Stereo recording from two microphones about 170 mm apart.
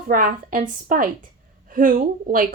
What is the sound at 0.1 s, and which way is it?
A woman's voice, 55° right (ahead or behind).